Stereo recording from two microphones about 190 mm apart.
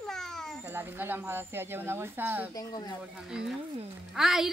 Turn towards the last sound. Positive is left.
turn(degrees=0)  # may be behind; listen again after turning